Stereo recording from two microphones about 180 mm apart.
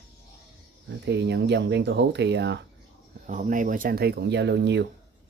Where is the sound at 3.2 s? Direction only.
45° right (ahead or behind).